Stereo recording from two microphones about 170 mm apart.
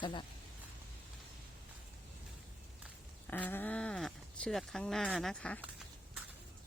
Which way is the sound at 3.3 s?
10° left (ahead or behind).